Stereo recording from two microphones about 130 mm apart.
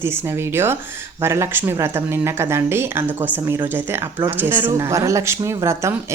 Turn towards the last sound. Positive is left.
turn(degrees=-20)  # may be behind; listen again after turning